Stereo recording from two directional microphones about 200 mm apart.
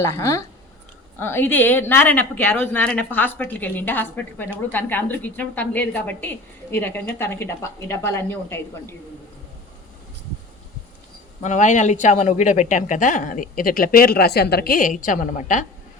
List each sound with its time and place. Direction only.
0.0 s a woman's voice: 15° left (ahead or behind)
11.4 s speech: 40° left (ahead or behind)